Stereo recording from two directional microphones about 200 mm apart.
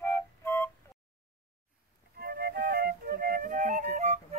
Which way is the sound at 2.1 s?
50° right (ahead or behind).